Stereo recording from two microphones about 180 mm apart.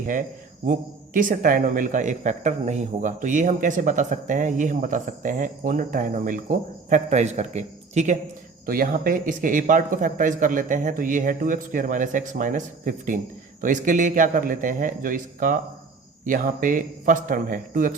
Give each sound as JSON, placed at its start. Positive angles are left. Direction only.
{"t": 0.0, "sound": "speech", "side_deg": -50}
{"t": 8.6, "sound": "speech", "side_deg": -55}